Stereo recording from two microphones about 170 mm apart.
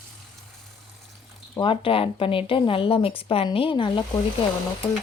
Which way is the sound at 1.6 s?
30° left (ahead or behind).